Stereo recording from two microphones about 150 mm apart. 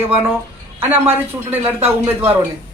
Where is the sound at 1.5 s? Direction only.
10° right (ahead or behind).